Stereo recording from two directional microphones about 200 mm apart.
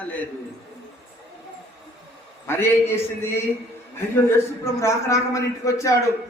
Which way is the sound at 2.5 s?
10° left (ahead or behind).